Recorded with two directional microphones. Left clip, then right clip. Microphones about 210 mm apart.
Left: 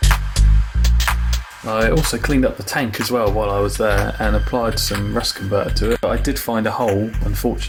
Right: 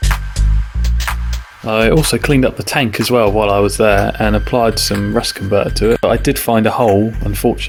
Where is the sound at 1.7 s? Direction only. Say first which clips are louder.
Right 5 dB; 40° right (ahead or behind).